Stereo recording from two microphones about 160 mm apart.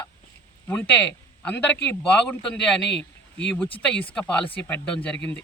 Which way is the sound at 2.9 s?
90° left.